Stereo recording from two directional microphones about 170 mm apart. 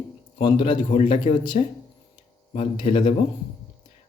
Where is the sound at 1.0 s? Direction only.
40° left (ahead or behind).